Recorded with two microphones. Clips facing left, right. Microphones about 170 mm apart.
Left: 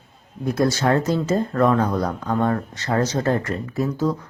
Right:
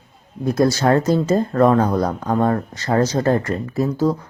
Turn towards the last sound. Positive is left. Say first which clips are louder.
# right 3 dB
turn(degrees=-35)  # may be behind; listen again after turning